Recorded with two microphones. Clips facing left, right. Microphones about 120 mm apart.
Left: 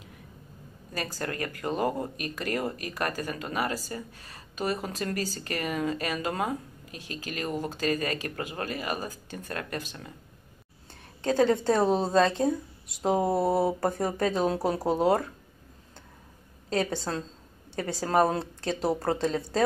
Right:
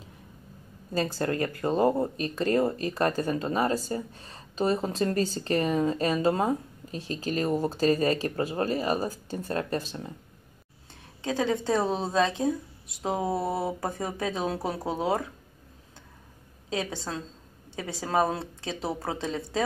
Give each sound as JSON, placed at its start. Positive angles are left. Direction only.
{"t": 0.9, "sound": "speech", "side_deg": -20}
{"t": 10.9, "sound": "speech", "side_deg": 0}
{"t": 16.6, "sound": "speech", "side_deg": -5}